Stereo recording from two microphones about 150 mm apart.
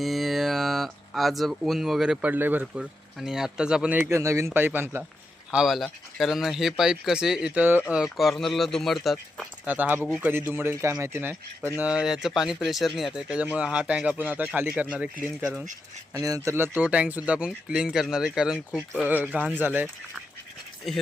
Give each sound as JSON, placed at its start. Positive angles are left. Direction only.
{"t": 0.0, "sound": "speech", "side_deg": 0}
{"t": 5.5, "sound": "speech", "side_deg": -5}
{"t": 9.6, "sound": "speech", "side_deg": -10}
{"t": 16.1, "sound": "speech", "side_deg": -20}
{"t": 20.8, "sound": "speech", "side_deg": 0}